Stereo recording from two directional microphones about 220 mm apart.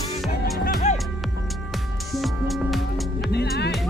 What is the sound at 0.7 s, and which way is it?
Music, 40° left (ahead or behind).